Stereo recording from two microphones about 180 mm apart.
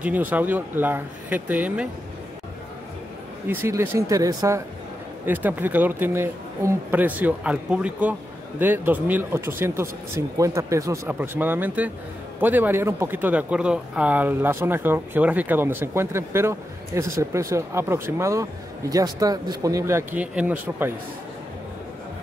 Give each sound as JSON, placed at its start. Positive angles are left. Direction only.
{"t": 0.0, "sound": "speech", "side_deg": -10}
{"t": 3.4, "sound": "speech", "side_deg": -15}